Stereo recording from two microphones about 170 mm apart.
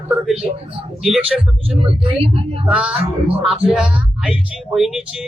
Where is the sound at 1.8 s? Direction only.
35° right (ahead or behind).